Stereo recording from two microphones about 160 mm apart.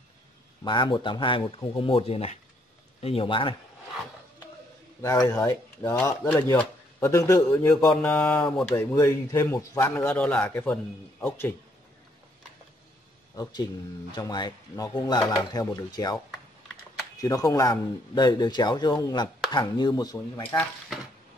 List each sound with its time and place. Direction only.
0.7 s speech: 30° left (ahead or behind)
5.0 s speech: 20° left (ahead or behind)
13.4 s speech: 25° left (ahead or behind)
17.2 s speech: 20° left (ahead or behind)